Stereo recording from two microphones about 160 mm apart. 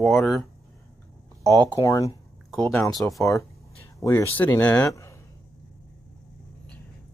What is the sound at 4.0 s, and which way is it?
Speech, 15° left (ahead or behind).